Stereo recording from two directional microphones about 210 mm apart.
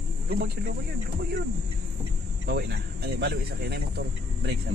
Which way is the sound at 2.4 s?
50° right (ahead or behind).